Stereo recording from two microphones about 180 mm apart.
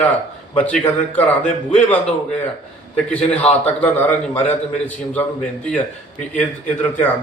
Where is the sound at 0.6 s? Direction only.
10° left (ahead or behind).